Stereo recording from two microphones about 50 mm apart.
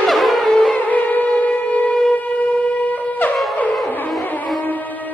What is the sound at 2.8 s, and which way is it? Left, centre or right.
Shofar, left.